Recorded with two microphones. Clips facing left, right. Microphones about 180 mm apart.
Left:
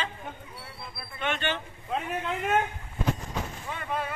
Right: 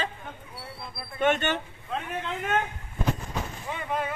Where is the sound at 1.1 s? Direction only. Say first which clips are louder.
Right 6 dB; 45° right (ahead or behind).